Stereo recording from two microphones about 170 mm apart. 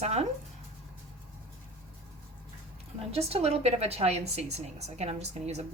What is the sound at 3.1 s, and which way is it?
A woman's voice, 35° right (ahead or behind).